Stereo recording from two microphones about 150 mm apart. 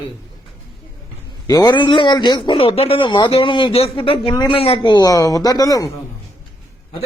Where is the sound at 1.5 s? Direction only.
25° left (ahead or behind).